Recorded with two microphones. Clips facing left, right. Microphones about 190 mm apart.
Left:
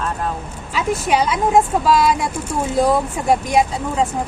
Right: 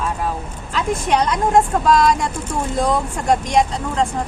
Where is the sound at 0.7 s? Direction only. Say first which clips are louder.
Even; 5° left (ahead or behind).